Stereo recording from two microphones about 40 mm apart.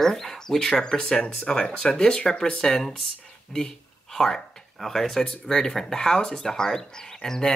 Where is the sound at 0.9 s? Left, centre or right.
Left.